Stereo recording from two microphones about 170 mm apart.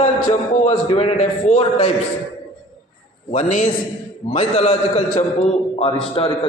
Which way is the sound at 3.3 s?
45° left (ahead or behind).